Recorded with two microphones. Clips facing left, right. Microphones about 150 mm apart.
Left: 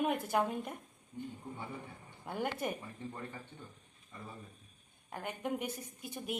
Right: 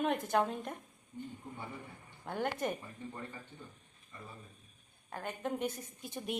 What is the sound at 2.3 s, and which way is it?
Speech, 10° left (ahead or behind).